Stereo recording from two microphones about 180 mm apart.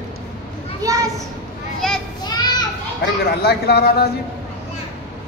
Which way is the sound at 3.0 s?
65° left (ahead or behind).